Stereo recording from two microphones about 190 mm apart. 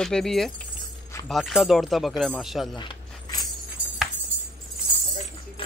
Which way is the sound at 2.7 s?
25° left (ahead or behind).